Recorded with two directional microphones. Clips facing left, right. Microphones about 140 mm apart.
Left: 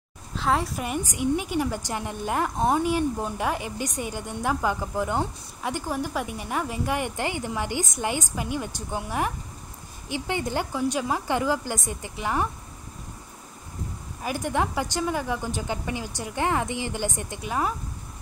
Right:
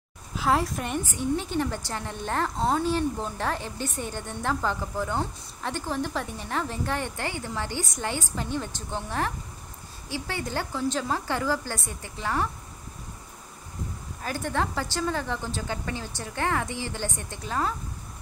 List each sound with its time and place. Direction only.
0.4 s a woman's voice: centre (ahead or behind); by 12.4 s 15° left (ahead or behind)
14.2 s a woman's voice: 15° left (ahead or behind)